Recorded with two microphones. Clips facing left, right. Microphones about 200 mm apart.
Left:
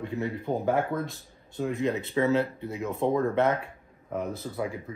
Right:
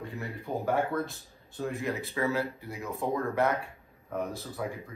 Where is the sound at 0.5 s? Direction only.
25° left (ahead or behind).